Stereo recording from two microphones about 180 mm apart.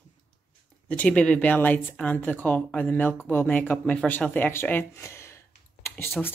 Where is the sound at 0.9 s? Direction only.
5° left (ahead or behind).